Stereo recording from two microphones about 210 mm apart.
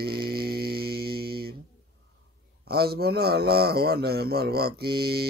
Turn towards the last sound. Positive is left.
turn(degrees=-50)  # may be behind; listen again after turning